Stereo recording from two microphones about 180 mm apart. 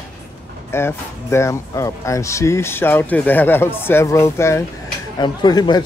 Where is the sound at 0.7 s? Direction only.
15° left (ahead or behind).